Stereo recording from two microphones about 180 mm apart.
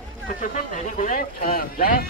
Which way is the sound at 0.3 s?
50° left (ahead or behind).